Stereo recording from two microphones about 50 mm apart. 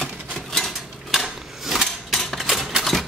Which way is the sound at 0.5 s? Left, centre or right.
Centre.